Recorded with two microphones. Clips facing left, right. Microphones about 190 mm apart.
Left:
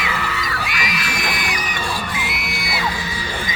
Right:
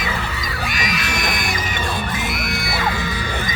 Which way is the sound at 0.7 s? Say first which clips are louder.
Right 1 dB; 45° right (ahead or behind).